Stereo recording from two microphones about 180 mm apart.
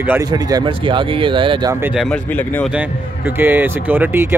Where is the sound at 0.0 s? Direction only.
10° right (ahead or behind).